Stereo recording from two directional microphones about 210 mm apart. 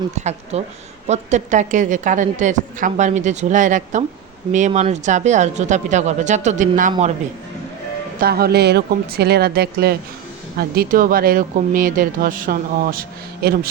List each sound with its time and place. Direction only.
0.2 s a woman's voice: 30° right (ahead or behind)
8.2 s speech: 50° right (ahead or behind)